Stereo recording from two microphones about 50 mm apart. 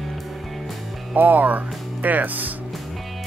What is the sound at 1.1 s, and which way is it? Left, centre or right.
Speech, right.